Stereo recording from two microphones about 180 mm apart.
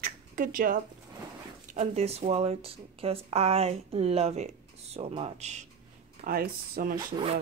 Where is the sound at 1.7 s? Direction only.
40° right (ahead or behind).